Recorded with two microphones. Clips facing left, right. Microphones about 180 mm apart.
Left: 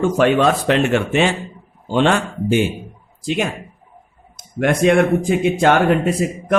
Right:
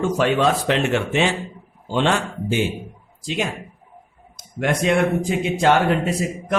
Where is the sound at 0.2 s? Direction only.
55° left (ahead or behind).